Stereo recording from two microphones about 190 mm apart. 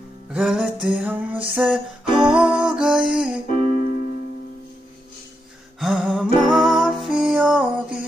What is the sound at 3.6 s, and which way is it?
Keyboard, 45° left (ahead or behind).